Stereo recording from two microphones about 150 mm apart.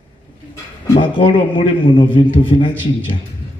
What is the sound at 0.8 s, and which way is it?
A man's voice, 30° left (ahead or behind).